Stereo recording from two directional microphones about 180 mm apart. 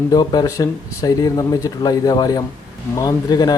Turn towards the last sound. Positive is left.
turn(degrees=20)  # may be behind; listen again after turning